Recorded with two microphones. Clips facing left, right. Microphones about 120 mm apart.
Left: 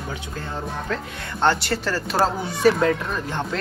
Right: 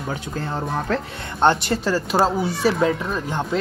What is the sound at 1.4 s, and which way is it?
Speech, 15° right (ahead or behind).